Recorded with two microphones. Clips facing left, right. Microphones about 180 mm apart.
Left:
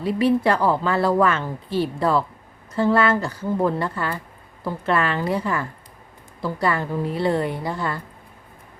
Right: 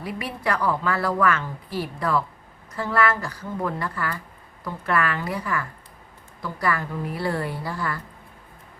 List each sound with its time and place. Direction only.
0.0 s a woman's voice: 30° left (ahead or behind)